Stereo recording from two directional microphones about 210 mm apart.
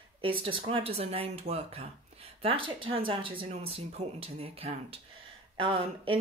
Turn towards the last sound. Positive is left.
turn(degrees=-25)  # may be behind; listen again after turning